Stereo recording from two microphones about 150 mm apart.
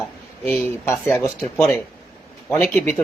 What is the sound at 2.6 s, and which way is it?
Speech, 10° left (ahead or behind).